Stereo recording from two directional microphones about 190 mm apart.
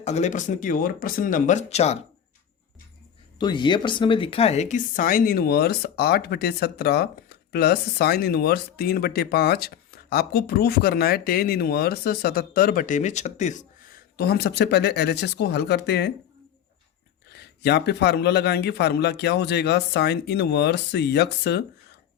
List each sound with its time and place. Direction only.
0.0 s speech: 35° left (ahead or behind)
3.3 s speech: 25° left (ahead or behind); by 13.7 s 40° left (ahead or behind)
14.2 s a man's voice: 60° left (ahead or behind)
17.2 s a man's voice: 60° left (ahead or behind)